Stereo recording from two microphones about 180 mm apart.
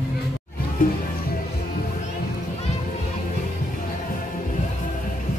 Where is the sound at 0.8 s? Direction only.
50° left (ahead or behind).